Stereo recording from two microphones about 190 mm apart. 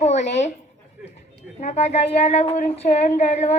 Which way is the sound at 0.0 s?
35° left (ahead or behind).